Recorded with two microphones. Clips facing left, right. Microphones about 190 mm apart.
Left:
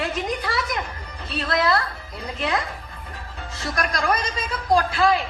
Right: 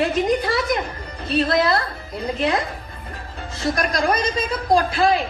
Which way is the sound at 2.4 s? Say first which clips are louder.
Right 3 dB; 25° right (ahead or behind).